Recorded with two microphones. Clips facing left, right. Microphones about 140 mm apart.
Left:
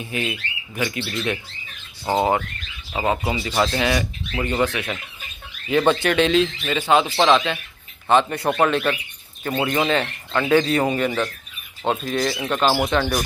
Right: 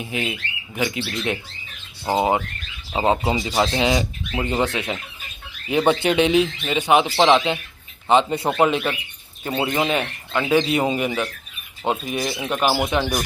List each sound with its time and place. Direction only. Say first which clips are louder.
0.0 s speech: even; 15° right (ahead or behind)
2.9 s speech: right 3 dB; 25° right (ahead or behind); by 13.2 s 10° right (ahead or behind)